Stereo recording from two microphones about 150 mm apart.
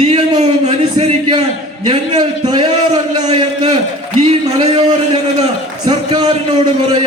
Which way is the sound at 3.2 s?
45° right (ahead or behind).